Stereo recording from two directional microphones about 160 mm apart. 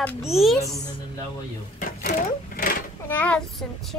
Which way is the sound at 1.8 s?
60° left (ahead or behind).